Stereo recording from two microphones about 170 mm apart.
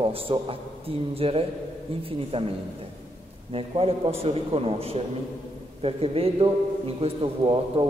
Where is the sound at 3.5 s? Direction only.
35° right (ahead or behind).